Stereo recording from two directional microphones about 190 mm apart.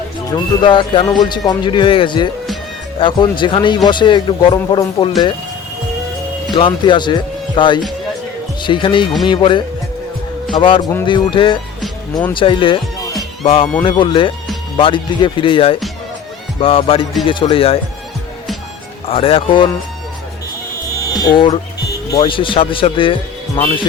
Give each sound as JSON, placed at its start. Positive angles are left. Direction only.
{"t": 0.3, "sound": "speech", "side_deg": 25}
{"t": 6.6, "sound": "speech", "side_deg": 25}
{"t": 11.8, "sound": "music", "side_deg": 0}
{"t": 12.3, "sound": "speech", "side_deg": 25}
{"t": 19.0, "sound": "speech", "side_deg": 30}
{"t": 21.1, "sound": "speech", "side_deg": 20}